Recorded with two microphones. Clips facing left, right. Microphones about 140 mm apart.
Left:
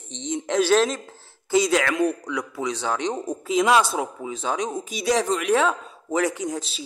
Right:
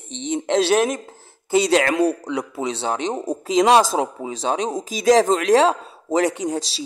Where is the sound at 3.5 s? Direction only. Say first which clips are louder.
Right 4 dB; 90° right.